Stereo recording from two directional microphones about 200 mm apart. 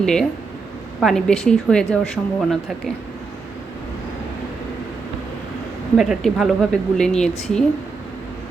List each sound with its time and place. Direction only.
0.0 s a woman's voice: 5° left (ahead or behind)
6.0 s a woman's voice: centre (ahead or behind)